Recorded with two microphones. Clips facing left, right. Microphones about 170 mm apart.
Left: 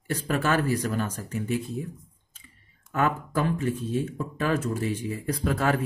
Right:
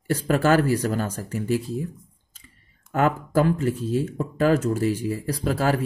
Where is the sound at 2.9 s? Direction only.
40° right (ahead or behind).